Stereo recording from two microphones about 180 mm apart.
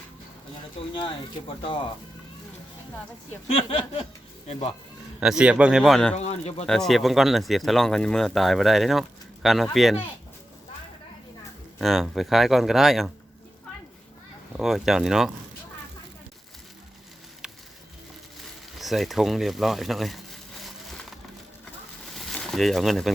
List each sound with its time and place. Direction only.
0.8 s speech: 35° left (ahead or behind)
3.4 s speech: 30° left (ahead or behind)
5.2 s speech: 5° right (ahead or behind)
6.1 s speech: 35° left (ahead or behind)
6.7 s speech: centre (ahead or behind)
11.8 s speech: centre (ahead or behind)
14.6 s speech: centre (ahead or behind)
18.8 s speech: centre (ahead or behind)
22.1 s a sound: centre (ahead or behind)